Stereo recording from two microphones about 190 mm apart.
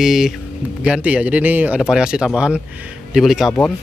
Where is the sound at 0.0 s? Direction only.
Centre (ahead or behind).